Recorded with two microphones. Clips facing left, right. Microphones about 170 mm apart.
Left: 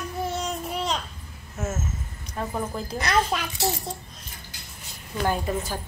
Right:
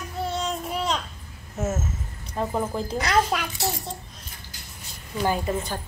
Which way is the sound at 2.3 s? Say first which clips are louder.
Right 3 dB; 25° right (ahead or behind).